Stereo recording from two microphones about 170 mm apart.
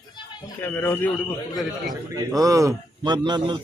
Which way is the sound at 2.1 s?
20° right (ahead or behind).